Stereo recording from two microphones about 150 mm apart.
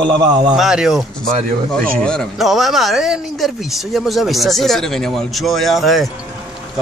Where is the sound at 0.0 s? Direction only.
30° right (ahead or behind).